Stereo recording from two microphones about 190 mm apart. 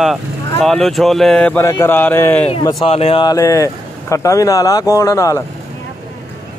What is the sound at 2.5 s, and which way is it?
Speech, 20° left (ahead or behind).